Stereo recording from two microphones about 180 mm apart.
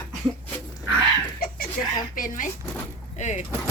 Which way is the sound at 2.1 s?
50° left (ahead or behind).